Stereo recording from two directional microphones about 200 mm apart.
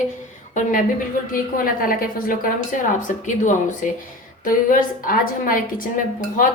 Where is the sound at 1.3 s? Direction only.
45° left (ahead or behind).